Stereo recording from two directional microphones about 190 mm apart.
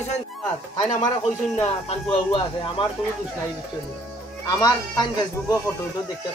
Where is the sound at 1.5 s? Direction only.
30° left (ahead or behind).